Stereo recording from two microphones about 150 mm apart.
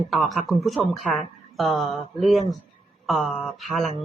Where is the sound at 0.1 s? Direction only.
Centre (ahead or behind).